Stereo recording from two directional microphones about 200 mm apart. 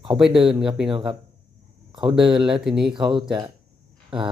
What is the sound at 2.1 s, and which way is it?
Speech, centre (ahead or behind).